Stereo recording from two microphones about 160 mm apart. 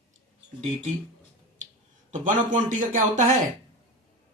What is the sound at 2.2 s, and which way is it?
Speech, 55° right (ahead or behind).